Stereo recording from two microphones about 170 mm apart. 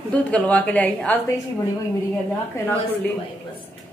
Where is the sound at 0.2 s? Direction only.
10° left (ahead or behind).